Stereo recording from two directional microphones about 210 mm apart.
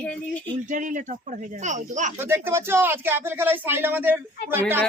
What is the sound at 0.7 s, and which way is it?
Speech, 35° right (ahead or behind).